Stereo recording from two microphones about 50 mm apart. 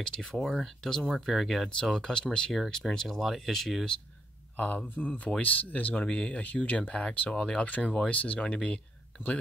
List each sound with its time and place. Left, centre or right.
0.0 s speech: centre
1.7 s speech: centre
2.9 s speech: centre
4.6 s speech: left
6.0 s speech: centre
6.4 s speech: left